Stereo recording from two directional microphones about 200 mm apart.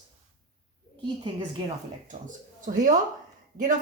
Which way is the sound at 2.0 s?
40° right (ahead or behind).